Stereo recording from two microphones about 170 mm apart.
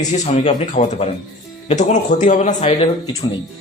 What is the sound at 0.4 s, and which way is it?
A man's voice, 40° left (ahead or behind).